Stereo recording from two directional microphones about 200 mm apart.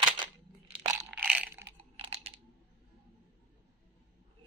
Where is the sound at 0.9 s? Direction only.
5° right (ahead or behind).